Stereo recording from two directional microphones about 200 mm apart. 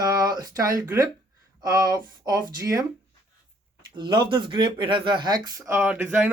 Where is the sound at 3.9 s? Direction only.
25° right (ahead or behind).